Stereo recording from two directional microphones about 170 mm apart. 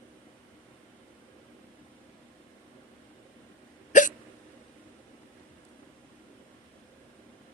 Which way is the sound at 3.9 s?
50° left (ahead or behind).